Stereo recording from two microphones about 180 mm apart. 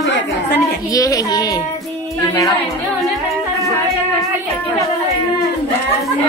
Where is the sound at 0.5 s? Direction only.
20° left (ahead or behind).